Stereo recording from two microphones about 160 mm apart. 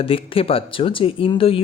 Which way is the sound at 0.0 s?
35° left (ahead or behind).